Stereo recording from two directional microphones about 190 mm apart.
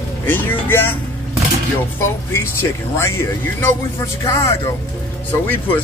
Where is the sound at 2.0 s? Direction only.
15° left (ahead or behind).